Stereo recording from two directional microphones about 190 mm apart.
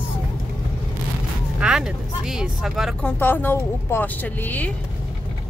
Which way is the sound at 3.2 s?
10° left (ahead or behind).